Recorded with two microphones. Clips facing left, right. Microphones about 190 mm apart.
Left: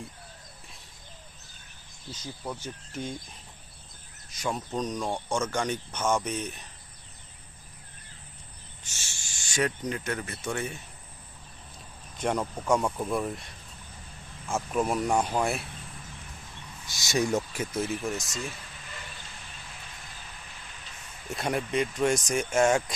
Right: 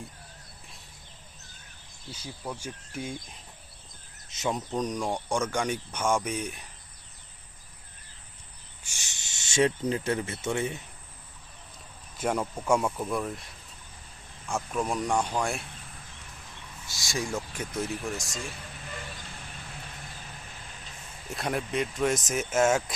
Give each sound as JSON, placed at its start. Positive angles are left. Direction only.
{"t": 2.6, "sound": "speech", "side_deg": -10}
{"t": 4.3, "sound": "speech", "side_deg": -20}
{"t": 8.8, "sound": "speech", "side_deg": -15}
{"t": 12.1, "sound": "speech", "side_deg": -5}
{"t": 16.8, "sound": "speech", "side_deg": 20}
{"t": 17.6, "sound": "speech", "side_deg": 0}
{"t": 21.2, "sound": "speech", "side_deg": 0}